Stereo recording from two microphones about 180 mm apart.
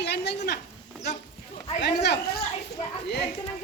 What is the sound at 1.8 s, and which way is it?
Speech, 70° left (ahead or behind).